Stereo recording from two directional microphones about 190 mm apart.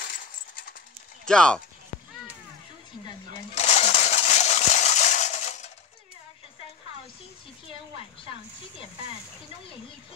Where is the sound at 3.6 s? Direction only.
35° left (ahead or behind).